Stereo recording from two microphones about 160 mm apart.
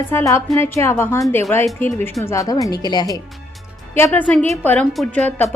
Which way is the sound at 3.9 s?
10° left (ahead or behind).